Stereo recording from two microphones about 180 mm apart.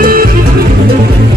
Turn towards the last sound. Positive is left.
turn(degrees=-50)  # may be behind; listen again after turning